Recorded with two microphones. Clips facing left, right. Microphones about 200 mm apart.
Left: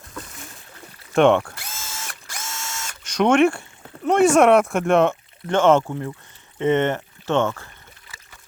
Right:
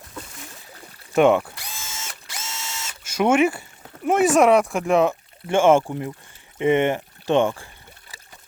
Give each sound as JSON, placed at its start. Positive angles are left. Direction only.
{"t": 1.1, "sound": "speech", "side_deg": -5}
{"t": 1.9, "sound": "ratchet", "side_deg": -20}
{"t": 2.7, "sound": "a sound", "side_deg": -5}
{"t": 4.0, "sound": "speech", "side_deg": -5}